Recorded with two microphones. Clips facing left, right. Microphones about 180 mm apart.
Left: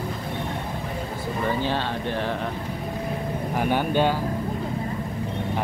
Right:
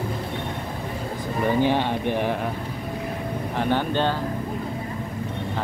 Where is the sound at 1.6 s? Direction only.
15° right (ahead or behind).